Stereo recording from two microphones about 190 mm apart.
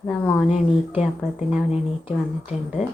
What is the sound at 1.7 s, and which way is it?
Speech, 30° left (ahead or behind).